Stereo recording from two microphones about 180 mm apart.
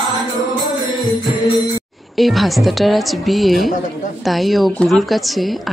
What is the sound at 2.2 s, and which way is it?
A woman's voice, centre (ahead or behind).